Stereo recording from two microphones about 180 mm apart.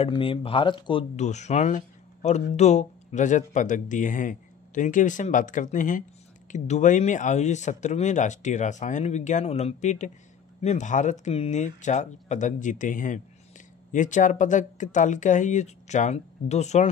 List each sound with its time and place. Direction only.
0.0 s speech: 30° left (ahead or behind)
1.1 s speech: 40° left (ahead or behind)